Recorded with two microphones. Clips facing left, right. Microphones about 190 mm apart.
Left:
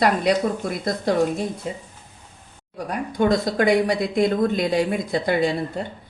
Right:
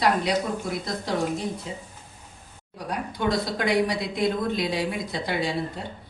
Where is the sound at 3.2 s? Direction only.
50° left (ahead or behind).